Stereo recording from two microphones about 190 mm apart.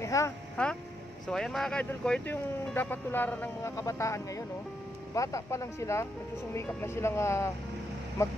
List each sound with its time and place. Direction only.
0.0 s speech: 15° left (ahead or behind)
1.2 s speech: 5° left (ahead or behind)